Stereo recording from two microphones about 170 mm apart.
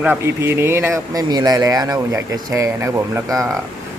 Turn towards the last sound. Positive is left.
turn(degrees=-15)  # may be behind; listen again after turning